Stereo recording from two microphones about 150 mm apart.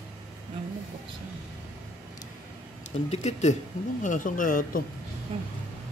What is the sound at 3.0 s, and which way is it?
A man's voice, 50° left (ahead or behind).